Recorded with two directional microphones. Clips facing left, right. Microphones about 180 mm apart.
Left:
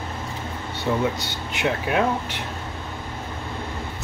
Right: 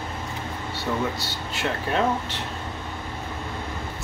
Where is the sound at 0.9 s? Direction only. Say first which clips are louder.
Left 4 dB; 15° left (ahead or behind).